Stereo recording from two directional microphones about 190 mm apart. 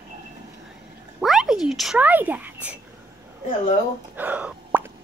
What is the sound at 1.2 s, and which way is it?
Speech, centre (ahead or behind).